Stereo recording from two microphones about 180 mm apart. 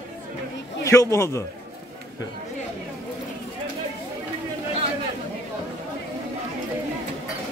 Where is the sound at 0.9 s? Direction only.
15° left (ahead or behind).